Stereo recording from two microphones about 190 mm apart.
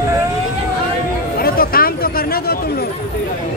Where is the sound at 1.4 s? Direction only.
50° left (ahead or behind).